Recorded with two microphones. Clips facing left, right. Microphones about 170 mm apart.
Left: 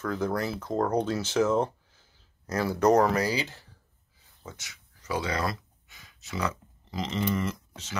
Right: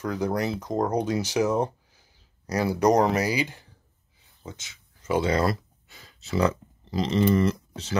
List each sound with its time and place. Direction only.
0.0 s speech: 15° right (ahead or behind); by 8.0 s 35° right (ahead or behind)